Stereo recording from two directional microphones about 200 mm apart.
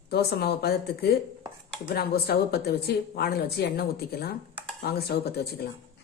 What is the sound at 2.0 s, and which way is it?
Speech, 50° left (ahead or behind).